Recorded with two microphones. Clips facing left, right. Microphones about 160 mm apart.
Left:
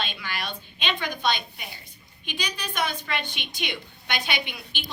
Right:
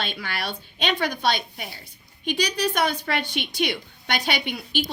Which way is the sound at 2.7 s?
55° right (ahead or behind).